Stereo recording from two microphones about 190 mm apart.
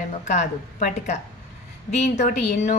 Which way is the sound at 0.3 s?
40° left (ahead or behind).